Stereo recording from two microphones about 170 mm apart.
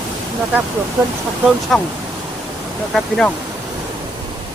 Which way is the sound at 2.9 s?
Centre (ahead or behind).